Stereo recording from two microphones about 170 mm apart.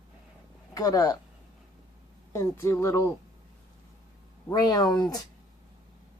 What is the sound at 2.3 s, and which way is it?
Speech, 15° left (ahead or behind).